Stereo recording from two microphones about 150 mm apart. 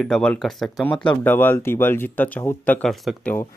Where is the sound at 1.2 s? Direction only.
10° left (ahead or behind).